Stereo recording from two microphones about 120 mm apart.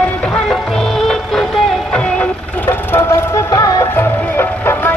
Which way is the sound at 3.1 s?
25° left (ahead or behind).